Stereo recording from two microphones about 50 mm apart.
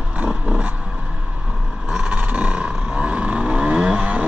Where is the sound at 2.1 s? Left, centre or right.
Right.